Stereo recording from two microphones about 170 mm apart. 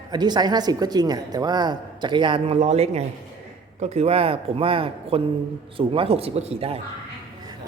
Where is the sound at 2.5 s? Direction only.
40° right (ahead or behind).